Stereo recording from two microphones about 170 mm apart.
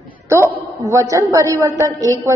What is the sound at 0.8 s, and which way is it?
A woman's voice, 20° right (ahead or behind).